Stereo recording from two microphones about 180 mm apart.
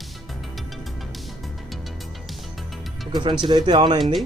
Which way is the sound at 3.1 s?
25° right (ahead or behind).